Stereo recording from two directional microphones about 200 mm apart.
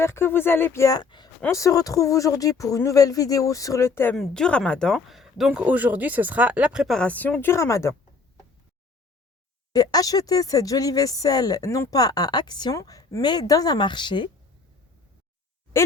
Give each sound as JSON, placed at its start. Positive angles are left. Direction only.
{"t": 0.0, "sound": "speech", "side_deg": 15}
{"t": 9.7, "sound": "speech", "side_deg": 20}